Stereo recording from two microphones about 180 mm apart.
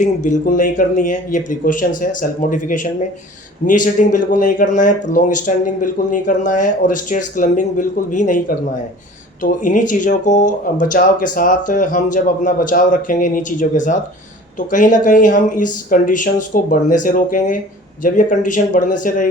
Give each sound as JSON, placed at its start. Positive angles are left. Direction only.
{"t": 0.0, "sound": "speech", "side_deg": 40}